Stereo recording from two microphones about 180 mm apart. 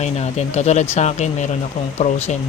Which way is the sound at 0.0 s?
35° left (ahead or behind).